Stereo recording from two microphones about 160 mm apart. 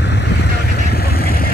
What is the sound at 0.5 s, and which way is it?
Vehicle, 75° left (ahead or behind).